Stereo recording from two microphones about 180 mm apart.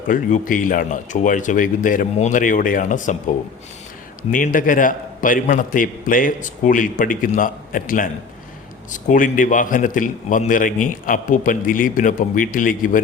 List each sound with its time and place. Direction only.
0.1 s a man's voice: 50° left (ahead or behind)
4.2 s a man's voice: 50° left (ahead or behind)